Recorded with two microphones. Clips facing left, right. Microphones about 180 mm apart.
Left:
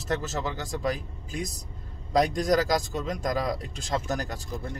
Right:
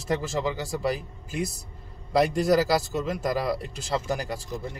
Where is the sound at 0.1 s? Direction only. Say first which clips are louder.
Right 3 dB; 10° right (ahead or behind).